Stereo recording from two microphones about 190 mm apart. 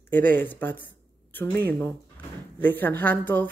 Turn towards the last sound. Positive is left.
turn(degrees=10)  # may be behind; listen again after turning